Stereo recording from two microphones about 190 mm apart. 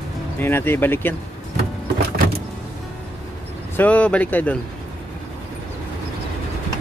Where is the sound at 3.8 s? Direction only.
5° left (ahead or behind).